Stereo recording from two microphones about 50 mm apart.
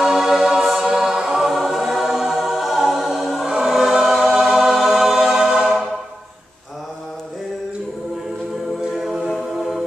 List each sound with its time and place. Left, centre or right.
0.0 s choir: centre
9.2 s a capella: centre